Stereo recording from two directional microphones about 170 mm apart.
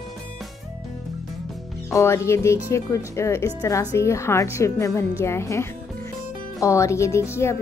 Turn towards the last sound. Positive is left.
turn(degrees=15)  # may be behind; listen again after turning